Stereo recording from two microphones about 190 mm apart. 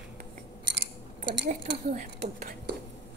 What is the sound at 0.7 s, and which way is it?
Scissors, 65° right (ahead or behind).